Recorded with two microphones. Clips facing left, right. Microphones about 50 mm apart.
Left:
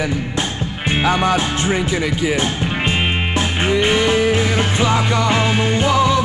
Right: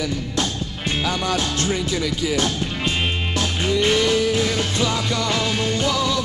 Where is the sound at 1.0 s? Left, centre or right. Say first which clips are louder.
Left 7 dB; left.